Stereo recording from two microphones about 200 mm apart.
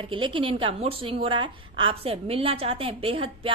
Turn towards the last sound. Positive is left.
turn(degrees=-25)  # may be behind; listen again after turning